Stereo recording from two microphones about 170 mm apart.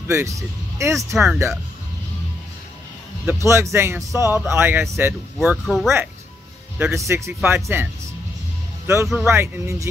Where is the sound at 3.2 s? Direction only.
15° right (ahead or behind).